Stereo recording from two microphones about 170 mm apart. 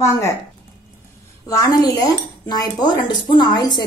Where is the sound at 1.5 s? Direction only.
20° left (ahead or behind).